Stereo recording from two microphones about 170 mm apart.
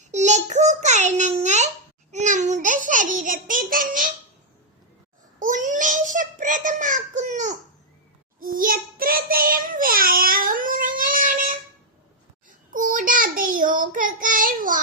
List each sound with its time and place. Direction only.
0.0 s a sound: 45° right (ahead or behind)
5.4 s child singing: 50° right (ahead or behind)
8.4 s child singing: 55° right (ahead or behind)
12.7 s child singing: 55° right (ahead or behind)